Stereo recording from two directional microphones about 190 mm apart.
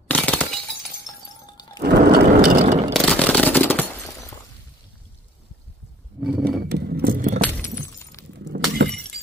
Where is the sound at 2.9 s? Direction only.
5° left (ahead or behind).